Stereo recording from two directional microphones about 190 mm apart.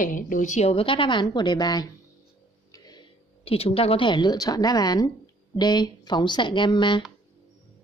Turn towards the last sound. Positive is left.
turn(degrees=25)  # may be behind; listen again after turning